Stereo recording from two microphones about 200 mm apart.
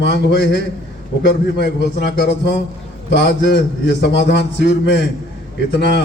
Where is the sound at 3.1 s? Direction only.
60° left (ahead or behind).